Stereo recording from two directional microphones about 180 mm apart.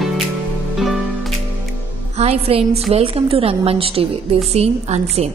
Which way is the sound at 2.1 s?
35° right (ahead or behind).